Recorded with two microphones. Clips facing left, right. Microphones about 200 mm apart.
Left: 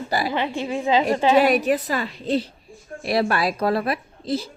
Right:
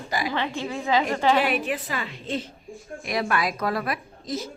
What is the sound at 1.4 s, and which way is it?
A woman's voice, 40° left (ahead or behind).